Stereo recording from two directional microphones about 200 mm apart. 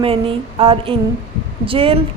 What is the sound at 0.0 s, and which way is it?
A woman's voice, 25° right (ahead or behind).